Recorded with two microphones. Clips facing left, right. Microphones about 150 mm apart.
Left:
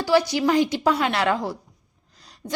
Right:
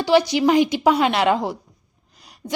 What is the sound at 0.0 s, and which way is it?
A woman's voice, 20° right (ahead or behind).